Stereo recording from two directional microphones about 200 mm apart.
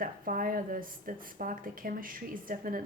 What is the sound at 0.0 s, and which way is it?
A woman's voice, 45° right (ahead or behind).